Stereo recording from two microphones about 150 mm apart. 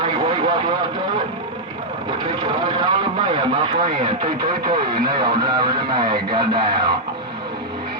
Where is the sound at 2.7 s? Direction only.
30° right (ahead or behind).